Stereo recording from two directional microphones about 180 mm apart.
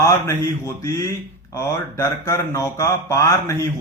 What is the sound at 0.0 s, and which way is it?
Speech, 15° left (ahead or behind).